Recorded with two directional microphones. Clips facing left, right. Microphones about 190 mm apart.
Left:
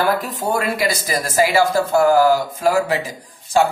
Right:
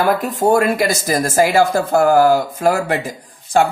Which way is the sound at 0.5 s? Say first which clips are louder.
Right 5 dB; 50° right (ahead or behind).